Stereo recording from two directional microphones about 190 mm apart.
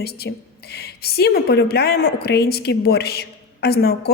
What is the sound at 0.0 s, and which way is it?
A woman's voice, 55° left (ahead or behind).